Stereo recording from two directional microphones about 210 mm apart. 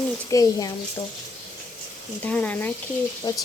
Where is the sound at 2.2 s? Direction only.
5° left (ahead or behind).